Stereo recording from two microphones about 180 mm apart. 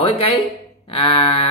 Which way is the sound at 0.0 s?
30° left (ahead or behind).